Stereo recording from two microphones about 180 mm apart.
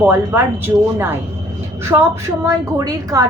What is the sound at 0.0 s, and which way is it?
A woman's voice, 10° right (ahead or behind).